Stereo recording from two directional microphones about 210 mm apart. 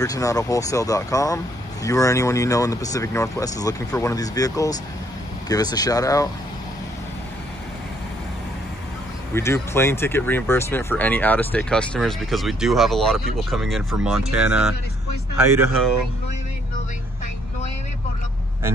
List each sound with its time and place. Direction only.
0.0 s speech: 15° left (ahead or behind)
9.3 s speech: 10° left (ahead or behind); by 14.8 s 5° right (ahead or behind)